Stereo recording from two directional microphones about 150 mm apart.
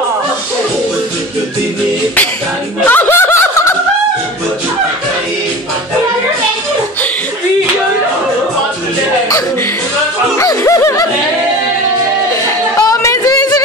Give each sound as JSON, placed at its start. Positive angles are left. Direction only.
{"t": 2.8, "sound": "snicker", "side_deg": 10}
{"t": 10.3, "sound": "music", "side_deg": 20}
{"t": 12.7, "sound": "a sound", "side_deg": 20}